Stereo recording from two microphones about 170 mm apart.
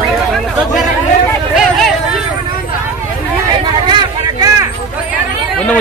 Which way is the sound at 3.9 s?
25° right (ahead or behind).